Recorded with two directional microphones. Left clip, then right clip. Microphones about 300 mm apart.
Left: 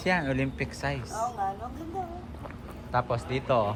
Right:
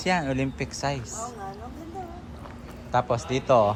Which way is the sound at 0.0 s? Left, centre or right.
Centre.